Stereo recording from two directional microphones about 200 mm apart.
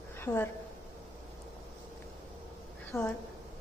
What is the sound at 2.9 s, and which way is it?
Speech, 15° left (ahead or behind).